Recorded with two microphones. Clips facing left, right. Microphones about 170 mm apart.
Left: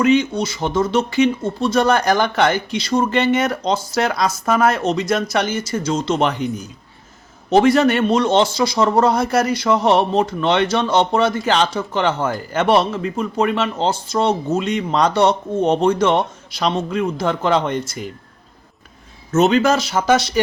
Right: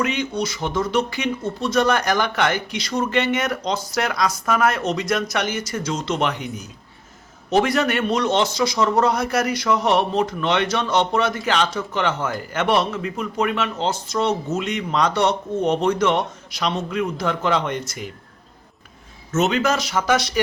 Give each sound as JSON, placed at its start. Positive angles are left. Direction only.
{"t": 0.0, "sound": "a man's voice", "side_deg": 30}
{"t": 7.5, "sound": "a man's voice", "side_deg": 30}
{"t": 19.3, "sound": "a man's voice", "side_deg": 35}